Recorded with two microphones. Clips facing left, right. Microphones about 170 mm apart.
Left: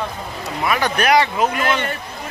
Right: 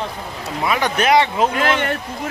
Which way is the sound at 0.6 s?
20° right (ahead or behind).